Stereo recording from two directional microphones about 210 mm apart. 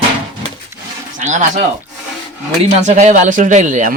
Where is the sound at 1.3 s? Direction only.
35° right (ahead or behind).